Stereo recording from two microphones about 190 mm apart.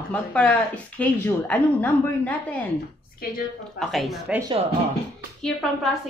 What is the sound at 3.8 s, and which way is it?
Speech, centre (ahead or behind).